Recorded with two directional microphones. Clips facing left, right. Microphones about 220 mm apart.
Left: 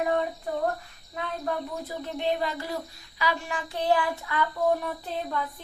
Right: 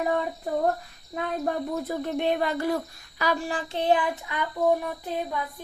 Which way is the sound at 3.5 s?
25° right (ahead or behind).